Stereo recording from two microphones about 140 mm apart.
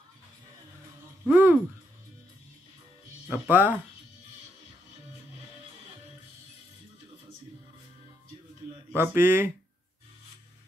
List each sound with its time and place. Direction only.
1.3 s speech: 10° right (ahead or behind)
3.3 s speech: 15° right (ahead or behind)
8.9 s speech: 15° right (ahead or behind)